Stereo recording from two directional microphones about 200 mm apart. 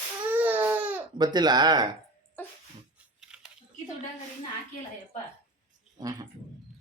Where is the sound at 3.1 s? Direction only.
5° right (ahead or behind).